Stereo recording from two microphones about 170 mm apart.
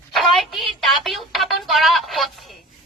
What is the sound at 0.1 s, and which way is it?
Music, centre (ahead or behind).